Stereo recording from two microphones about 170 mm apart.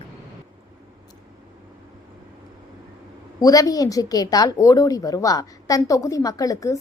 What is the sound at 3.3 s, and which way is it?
A woman's voice, 20° left (ahead or behind).